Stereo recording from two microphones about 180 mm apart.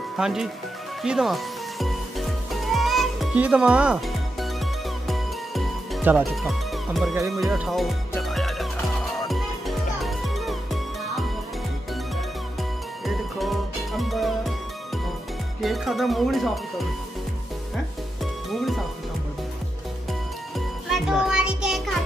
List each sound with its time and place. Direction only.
0.1 s speech: 5° right (ahead or behind)
1.0 s music: centre (ahead or behind)
6.3 s speech: centre (ahead or behind)
8.2 s music: centre (ahead or behind)
13.0 s music: centre (ahead or behind)
15.6 s speech: centre (ahead or behind)
18.2 s music: centre (ahead or behind)
20.1 s music: centre (ahead or behind)